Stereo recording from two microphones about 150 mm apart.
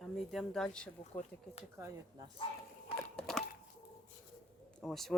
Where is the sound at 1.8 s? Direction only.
25° right (ahead or behind).